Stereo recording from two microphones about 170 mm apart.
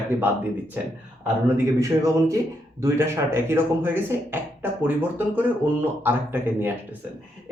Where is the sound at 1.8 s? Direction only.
20° right (ahead or behind).